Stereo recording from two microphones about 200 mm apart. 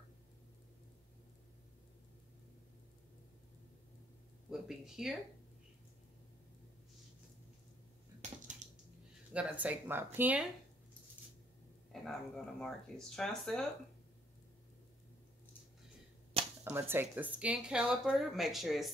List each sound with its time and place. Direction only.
4.5 s speech: centre (ahead or behind)
8.5 s a sound: 40° right (ahead or behind)
9.3 s speech: 5° right (ahead or behind)
11.9 s speech: centre (ahead or behind)
16.6 s speech: 10° right (ahead or behind)